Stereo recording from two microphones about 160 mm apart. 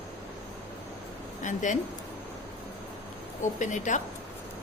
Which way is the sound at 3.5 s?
50° left (ahead or behind).